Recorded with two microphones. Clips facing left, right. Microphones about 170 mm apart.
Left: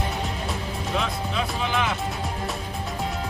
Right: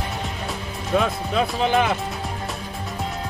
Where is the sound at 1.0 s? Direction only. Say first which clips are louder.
Right 7 dB; 50° right (ahead or behind).